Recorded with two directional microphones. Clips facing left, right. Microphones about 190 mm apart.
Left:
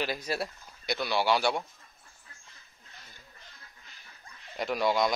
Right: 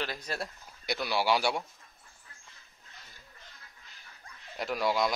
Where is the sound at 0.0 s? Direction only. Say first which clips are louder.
Left 4 dB; 10° left (ahead or behind).